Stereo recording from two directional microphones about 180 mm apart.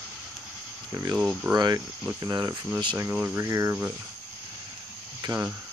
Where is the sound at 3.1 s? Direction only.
10° right (ahead or behind).